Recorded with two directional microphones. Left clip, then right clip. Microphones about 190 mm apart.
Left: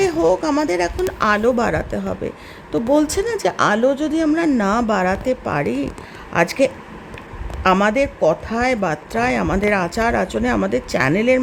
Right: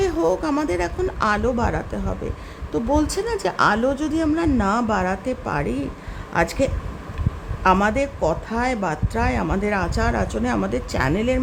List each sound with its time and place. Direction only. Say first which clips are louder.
0.0 s speech: left 4 dB; 20° left (ahead or behind)